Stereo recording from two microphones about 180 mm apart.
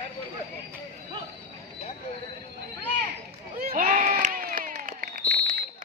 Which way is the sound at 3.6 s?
50° right (ahead or behind).